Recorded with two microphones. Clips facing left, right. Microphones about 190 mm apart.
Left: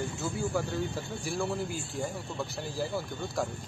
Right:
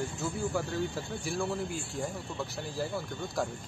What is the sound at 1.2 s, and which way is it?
Speech, centre (ahead or behind).